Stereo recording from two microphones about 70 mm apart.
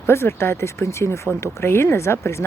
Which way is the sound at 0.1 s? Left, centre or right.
Left.